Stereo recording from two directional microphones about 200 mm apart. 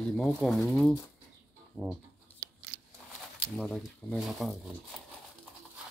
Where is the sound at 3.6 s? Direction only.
5° left (ahead or behind).